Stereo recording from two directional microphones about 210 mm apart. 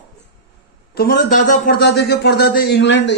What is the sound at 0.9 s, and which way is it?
A man's voice, 45° left (ahead or behind).